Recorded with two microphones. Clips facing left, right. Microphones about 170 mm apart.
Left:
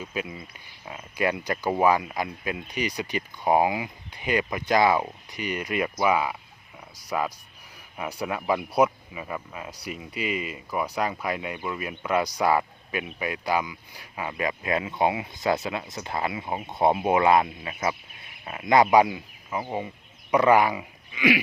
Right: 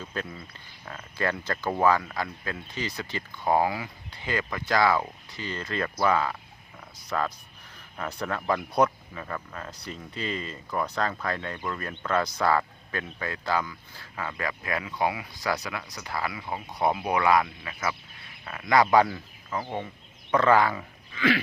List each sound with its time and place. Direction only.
0.0 s speech: 10° left (ahead or behind)